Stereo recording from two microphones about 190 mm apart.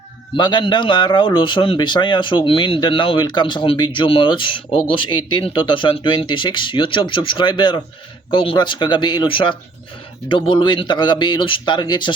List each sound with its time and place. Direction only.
0.3 s speech: 25° left (ahead or behind)